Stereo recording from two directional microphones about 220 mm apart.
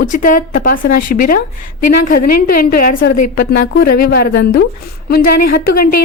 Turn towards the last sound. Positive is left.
turn(degrees=40)  # may be behind; listen again after turning